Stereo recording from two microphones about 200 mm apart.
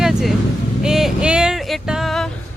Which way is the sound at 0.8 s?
Centre (ahead or behind).